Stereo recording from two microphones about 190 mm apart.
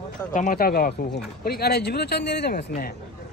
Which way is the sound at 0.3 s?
45° left (ahead or behind).